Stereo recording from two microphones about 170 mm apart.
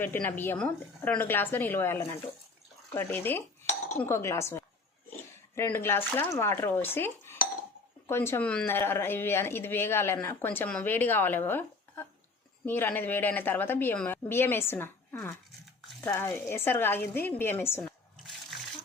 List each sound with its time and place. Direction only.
0.0 s speech: 10° left (ahead or behind)
18.2 s water: centre (ahead or behind)